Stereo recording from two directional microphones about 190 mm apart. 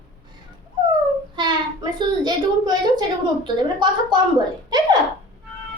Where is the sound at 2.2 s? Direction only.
20° right (ahead or behind).